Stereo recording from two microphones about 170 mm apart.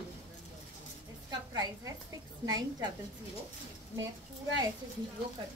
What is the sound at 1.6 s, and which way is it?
A woman's voice, 20° right (ahead or behind).